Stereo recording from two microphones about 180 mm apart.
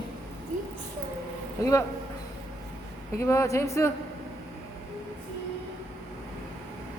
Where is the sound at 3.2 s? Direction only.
15° left (ahead or behind).